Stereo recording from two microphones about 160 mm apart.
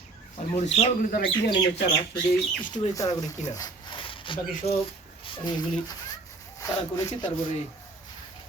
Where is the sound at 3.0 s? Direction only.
20° left (ahead or behind).